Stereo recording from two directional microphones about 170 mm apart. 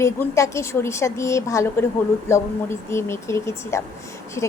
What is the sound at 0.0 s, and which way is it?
A woman's voice, 15° left (ahead or behind).